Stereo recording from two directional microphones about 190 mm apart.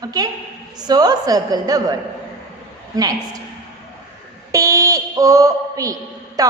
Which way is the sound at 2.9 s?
20° right (ahead or behind).